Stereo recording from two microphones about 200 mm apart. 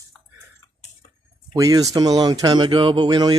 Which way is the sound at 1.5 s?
15° right (ahead or behind).